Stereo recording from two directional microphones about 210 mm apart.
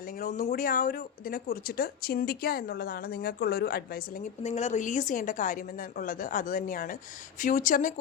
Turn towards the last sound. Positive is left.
turn(degrees=40)  # may be behind; listen again after turning